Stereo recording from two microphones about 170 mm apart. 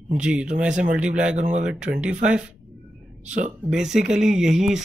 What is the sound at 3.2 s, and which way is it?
Speech, 45° right (ahead or behind).